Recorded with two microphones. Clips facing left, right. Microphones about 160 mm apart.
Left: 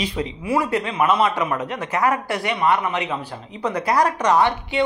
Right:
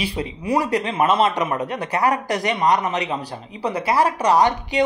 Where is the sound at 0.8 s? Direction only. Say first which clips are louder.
Right 1 dB; 25° right (ahead or behind).